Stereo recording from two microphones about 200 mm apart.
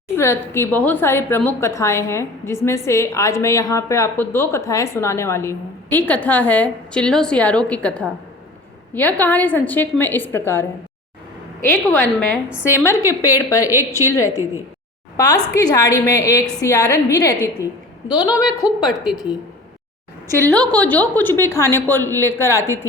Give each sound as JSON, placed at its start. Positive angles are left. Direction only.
{"t": 0.2, "sound": "a woman's voice", "side_deg": 10}
{"t": 11.9, "sound": "a woman's voice", "side_deg": 10}
{"t": 20.3, "sound": "a woman's voice", "side_deg": 5}